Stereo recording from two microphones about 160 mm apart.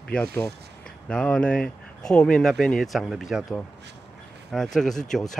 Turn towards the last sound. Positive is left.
turn(degrees=5)  # may be behind; listen again after turning